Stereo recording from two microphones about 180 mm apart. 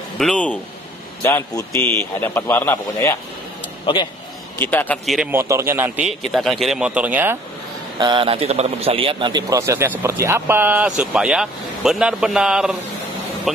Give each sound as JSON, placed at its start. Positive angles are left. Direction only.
{"t": 0.2, "sound": "speech", "side_deg": 5}
{"t": 1.2, "sound": "a man's voice", "side_deg": 15}
{"t": 3.8, "sound": "a man's voice", "side_deg": 25}
{"t": 4.6, "sound": "a man's voice", "side_deg": 10}
{"t": 5.3, "sound": "a man's voice", "side_deg": -15}
{"t": 8.0, "sound": "a man's voice", "side_deg": -25}